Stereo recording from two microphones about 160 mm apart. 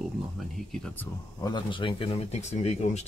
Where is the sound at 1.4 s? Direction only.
30° left (ahead or behind).